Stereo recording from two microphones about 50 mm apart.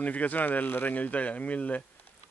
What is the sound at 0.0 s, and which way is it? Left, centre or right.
Speech, left.